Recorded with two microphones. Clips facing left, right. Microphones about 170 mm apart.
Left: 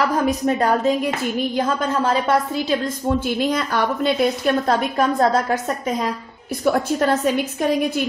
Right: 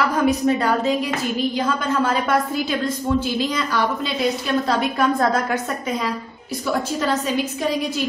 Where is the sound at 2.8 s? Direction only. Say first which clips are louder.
Even; 50° left (ahead or behind).